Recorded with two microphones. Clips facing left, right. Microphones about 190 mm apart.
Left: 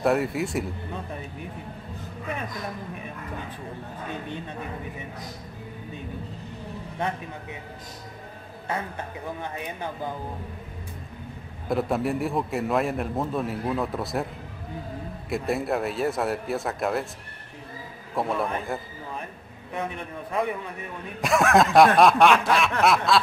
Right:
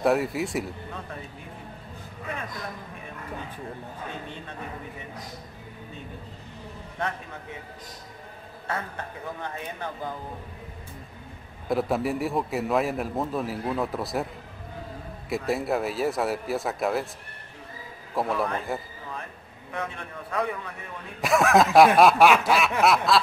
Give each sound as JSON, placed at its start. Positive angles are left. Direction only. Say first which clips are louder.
{"t": 0.0, "sound": "a man's voice", "louder": "even", "side_deg": 0}
{"t": 9.4, "sound": "speech", "louder": "left 1 dB", "side_deg": 15}
{"t": 11.7, "sound": "a man's voice", "louder": "even", "side_deg": 0}
{"t": 15.2, "sound": "a man's voice", "louder": "even", "side_deg": 0}
{"t": 18.1, "sound": "a man's voice", "louder": "even", "side_deg": 0}
{"t": 19.7, "sound": "a man's voice", "louder": "left 2 dB", "side_deg": 20}
{"t": 21.2, "sound": "a man's voice", "louder": "even", "side_deg": 0}